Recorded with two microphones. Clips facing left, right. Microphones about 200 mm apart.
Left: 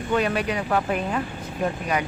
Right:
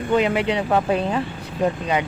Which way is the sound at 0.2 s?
20° right (ahead or behind).